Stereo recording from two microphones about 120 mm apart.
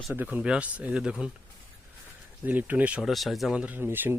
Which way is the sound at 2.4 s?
15° right (ahead or behind).